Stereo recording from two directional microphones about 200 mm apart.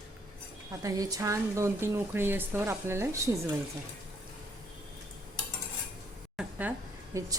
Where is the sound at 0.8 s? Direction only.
15° right (ahead or behind).